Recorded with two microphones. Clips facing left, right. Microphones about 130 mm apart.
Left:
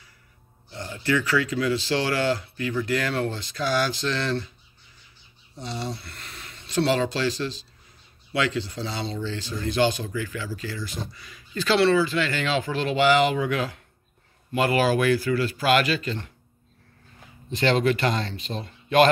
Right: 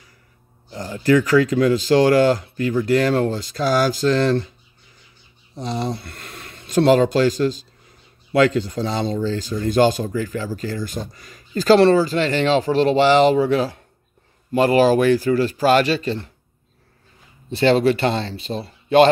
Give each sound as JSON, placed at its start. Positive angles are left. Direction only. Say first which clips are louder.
{"t": 0.7, "sound": "speech", "louder": "right 8 dB", "side_deg": -40}
{"t": 5.7, "sound": "speech", "louder": "right 7 dB", "side_deg": -50}
{"t": 17.5, "sound": "speech", "louder": "right 6 dB", "side_deg": -35}